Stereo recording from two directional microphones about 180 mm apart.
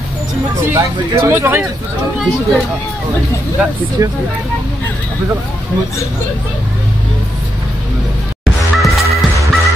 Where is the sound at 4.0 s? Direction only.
20° right (ahead or behind).